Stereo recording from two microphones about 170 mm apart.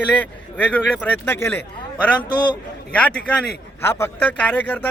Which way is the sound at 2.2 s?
25° left (ahead or behind).